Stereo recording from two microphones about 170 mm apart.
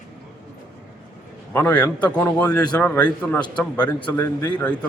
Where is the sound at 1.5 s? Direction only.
10° left (ahead or behind).